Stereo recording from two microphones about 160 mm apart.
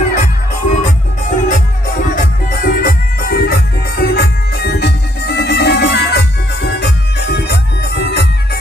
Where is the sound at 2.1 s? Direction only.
65° left (ahead or behind).